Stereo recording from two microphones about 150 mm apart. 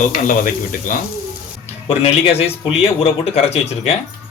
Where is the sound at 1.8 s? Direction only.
40° left (ahead or behind).